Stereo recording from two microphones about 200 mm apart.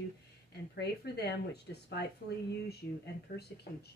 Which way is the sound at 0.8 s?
55° left (ahead or behind).